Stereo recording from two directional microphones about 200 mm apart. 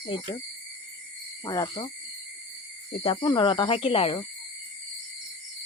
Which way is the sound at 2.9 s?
25° left (ahead or behind).